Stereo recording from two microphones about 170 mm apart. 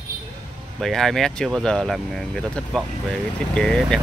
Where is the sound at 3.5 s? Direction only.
5° left (ahead or behind).